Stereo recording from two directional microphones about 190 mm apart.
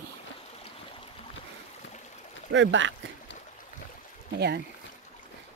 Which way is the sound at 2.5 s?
75° right (ahead or behind).